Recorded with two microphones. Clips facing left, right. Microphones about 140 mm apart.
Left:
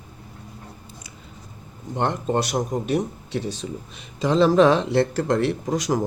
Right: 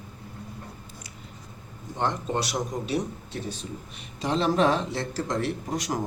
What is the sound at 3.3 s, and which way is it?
Speech, 90° left.